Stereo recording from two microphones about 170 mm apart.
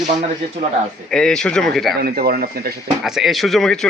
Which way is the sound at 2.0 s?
60° right (ahead or behind).